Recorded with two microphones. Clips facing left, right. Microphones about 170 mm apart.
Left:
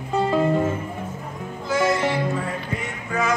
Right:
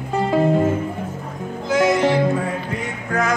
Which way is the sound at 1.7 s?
15° right (ahead or behind).